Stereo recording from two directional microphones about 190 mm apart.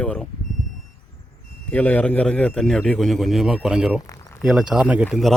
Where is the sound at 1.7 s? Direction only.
10° left (ahead or behind).